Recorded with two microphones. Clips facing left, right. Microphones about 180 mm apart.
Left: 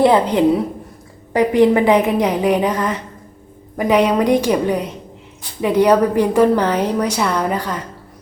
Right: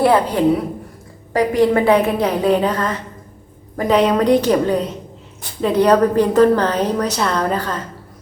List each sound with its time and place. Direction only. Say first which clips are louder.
0.0 s a woman's voice: left 1 dB; 20° left (ahead or behind)